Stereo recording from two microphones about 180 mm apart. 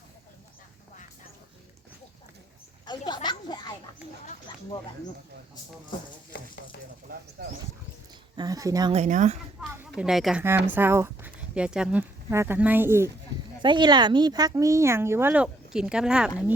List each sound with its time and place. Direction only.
2.8 s a sound: 25° left (ahead or behind)
8.4 s speech: 20° right (ahead or behind)
8.9 s speech: 40° right (ahead or behind)
9.6 s a sound: 5° right (ahead or behind)
10.7 s speech: 10° right (ahead or behind)
13.6 s speech: 25° right (ahead or behind); by 16.3 s 5° right (ahead or behind)